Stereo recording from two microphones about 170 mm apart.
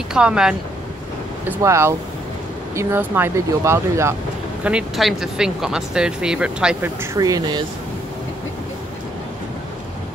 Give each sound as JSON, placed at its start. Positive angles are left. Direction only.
{"t": 0.1, "sound": "speech", "side_deg": -5}
{"t": 1.6, "sound": "speech", "side_deg": -15}
{"t": 4.6, "sound": "speech", "side_deg": -5}